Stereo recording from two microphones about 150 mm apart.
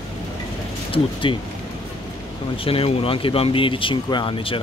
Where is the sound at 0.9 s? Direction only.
35° left (ahead or behind).